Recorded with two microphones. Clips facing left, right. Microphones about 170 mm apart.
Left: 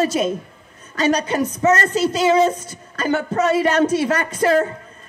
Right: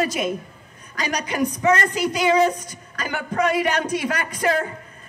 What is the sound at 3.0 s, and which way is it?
Music, 25° left (ahead or behind).